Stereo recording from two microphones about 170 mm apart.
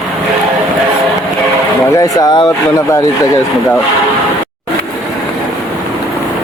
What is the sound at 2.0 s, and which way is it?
Speech, 20° left (ahead or behind).